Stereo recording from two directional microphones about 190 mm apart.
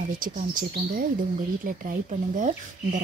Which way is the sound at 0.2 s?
45° right (ahead or behind).